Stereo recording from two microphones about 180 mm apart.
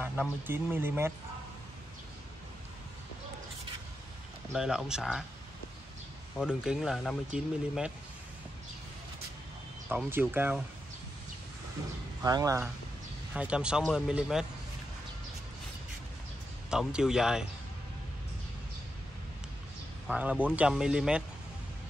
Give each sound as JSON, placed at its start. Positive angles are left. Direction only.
{"t": 0.5, "sound": "speech", "side_deg": -10}
{"t": 4.5, "sound": "speech", "side_deg": -5}
{"t": 6.3, "sound": "speech", "side_deg": -5}
{"t": 9.8, "sound": "speech", "side_deg": -10}
{"t": 12.2, "sound": "speech", "side_deg": -20}
{"t": 13.3, "sound": "speech", "side_deg": -5}
{"t": 16.7, "sound": "speech", "side_deg": -5}
{"t": 20.1, "sound": "speech", "side_deg": -5}